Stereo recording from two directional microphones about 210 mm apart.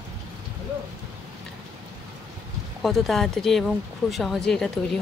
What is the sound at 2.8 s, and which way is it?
Speech, centre (ahead or behind).